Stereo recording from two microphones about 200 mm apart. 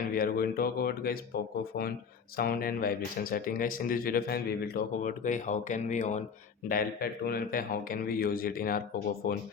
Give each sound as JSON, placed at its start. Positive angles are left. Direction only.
{"t": 0.0, "sound": "speech", "side_deg": 45}
{"t": 2.3, "sound": "speech", "side_deg": 45}